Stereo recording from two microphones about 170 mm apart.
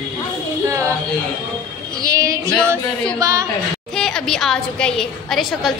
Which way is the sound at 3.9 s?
5° left (ahead or behind).